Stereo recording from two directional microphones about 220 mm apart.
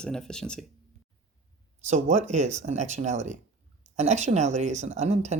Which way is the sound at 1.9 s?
35° right (ahead or behind).